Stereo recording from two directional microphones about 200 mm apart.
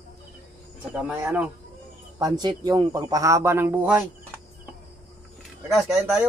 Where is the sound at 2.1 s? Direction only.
20° right (ahead or behind).